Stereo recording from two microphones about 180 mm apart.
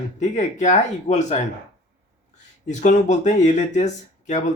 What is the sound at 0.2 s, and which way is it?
Speech, 40° left (ahead or behind).